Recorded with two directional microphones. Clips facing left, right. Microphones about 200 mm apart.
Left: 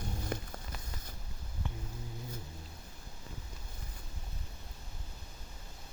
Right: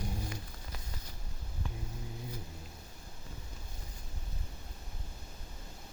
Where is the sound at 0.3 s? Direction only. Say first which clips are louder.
Left 7 dB; 55° left (ahead or behind).